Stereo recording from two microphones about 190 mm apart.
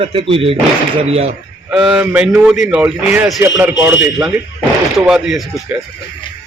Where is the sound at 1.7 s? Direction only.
5° right (ahead or behind).